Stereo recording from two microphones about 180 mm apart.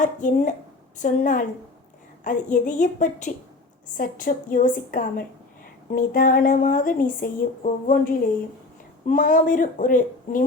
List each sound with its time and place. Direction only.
0.0 s speech: 45° left (ahead or behind)